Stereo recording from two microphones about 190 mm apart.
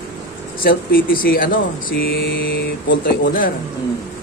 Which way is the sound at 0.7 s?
50° left (ahead or behind).